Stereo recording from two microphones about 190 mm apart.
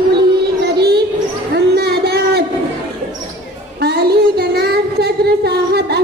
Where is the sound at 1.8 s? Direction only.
55° right (ahead or behind).